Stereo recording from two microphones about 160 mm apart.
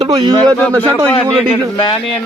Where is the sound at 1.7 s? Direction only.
30° left (ahead or behind).